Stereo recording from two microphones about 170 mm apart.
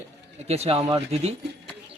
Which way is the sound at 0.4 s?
35° right (ahead or behind).